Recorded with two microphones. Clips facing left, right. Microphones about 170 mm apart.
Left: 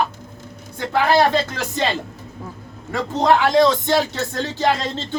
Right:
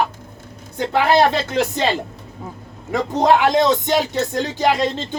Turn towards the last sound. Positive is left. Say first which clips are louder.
# right 2 dB
turn(degrees=-15)  # may be behind; listen again after turning